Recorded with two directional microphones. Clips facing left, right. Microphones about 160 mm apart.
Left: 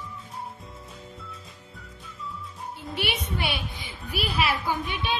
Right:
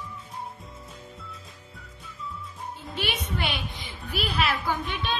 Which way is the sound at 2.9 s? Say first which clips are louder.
Left 1 dB; 15° left (ahead or behind).